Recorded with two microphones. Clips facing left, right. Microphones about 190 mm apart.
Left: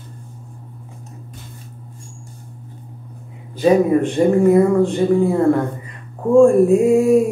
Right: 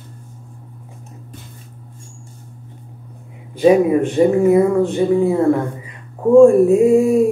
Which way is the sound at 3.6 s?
10° right (ahead or behind).